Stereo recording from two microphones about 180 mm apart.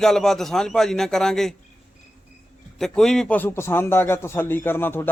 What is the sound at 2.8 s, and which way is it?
A man's voice, 5° left (ahead or behind).